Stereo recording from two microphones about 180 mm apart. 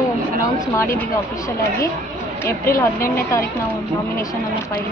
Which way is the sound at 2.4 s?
15° left (ahead or behind).